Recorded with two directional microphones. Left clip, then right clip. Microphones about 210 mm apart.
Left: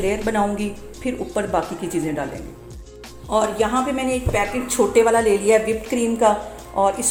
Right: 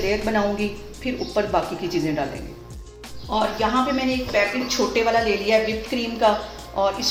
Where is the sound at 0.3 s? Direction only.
35° left (ahead or behind).